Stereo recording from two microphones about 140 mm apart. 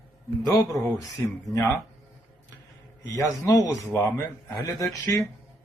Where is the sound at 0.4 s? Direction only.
25° left (ahead or behind).